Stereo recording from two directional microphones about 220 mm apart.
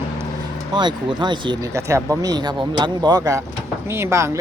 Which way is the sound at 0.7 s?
20° right (ahead or behind).